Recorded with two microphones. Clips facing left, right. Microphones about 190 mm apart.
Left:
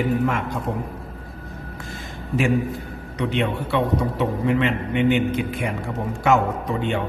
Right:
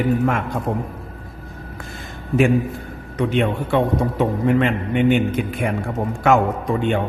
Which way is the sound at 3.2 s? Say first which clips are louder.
Right 4 dB; 50° right (ahead or behind).